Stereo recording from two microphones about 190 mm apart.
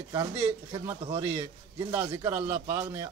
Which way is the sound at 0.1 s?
20° right (ahead or behind).